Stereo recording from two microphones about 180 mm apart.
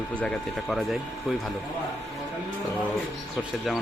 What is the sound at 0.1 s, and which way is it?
Speech, 5° left (ahead or behind).